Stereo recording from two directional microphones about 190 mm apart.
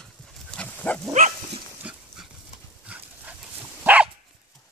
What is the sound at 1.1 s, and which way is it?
Dog, 40° right (ahead or behind).